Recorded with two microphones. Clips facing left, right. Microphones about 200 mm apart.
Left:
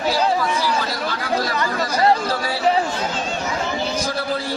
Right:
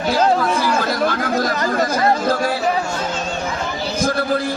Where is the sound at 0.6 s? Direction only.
50° right (ahead or behind).